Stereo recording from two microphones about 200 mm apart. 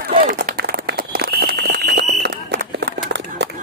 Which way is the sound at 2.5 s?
55° right (ahead or behind).